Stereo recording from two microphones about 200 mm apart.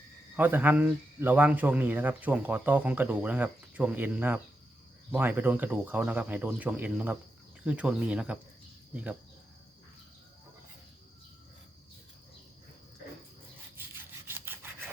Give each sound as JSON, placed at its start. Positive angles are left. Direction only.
{"t": 0.3, "sound": "speech", "side_deg": -10}
{"t": 14.3, "sound": "rub", "side_deg": -10}